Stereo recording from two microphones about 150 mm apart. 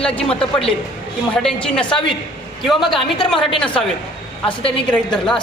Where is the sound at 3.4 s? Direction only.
35° left (ahead or behind).